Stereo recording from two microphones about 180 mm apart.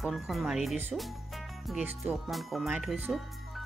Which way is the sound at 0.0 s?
Centre (ahead or behind).